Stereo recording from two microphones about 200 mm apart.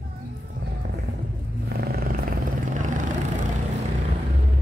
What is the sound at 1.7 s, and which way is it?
Vehicle, 55° right (ahead or behind).